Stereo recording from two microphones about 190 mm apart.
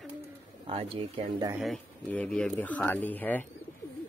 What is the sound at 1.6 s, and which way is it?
Speech, centre (ahead or behind).